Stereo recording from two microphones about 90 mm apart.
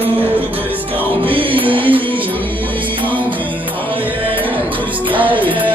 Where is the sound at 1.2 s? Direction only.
90° right.